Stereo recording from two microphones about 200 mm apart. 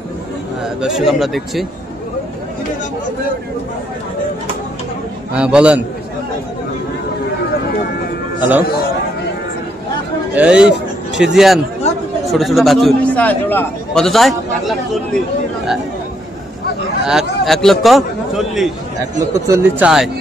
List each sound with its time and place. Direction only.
0.7 s a man's voice: centre (ahead or behind)
5.3 s a man's voice: 5° right (ahead or behind)
8.4 s a man's voice: 10° right (ahead or behind)
10.3 s a man's voice: 5° right (ahead or behind)
17.0 s a man's voice: 5° right (ahead or behind)
19.1 s a man's voice: 15° right (ahead or behind)
19.8 s a man's voice: 5° right (ahead or behind)